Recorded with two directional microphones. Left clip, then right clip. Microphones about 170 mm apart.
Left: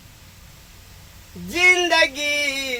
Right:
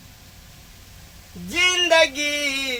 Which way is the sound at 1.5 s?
15° left (ahead or behind).